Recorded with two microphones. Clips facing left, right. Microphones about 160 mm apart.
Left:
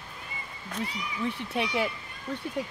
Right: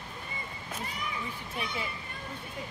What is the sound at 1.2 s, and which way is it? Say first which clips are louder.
Speech: left 8 dB; 70° left (ahead or behind).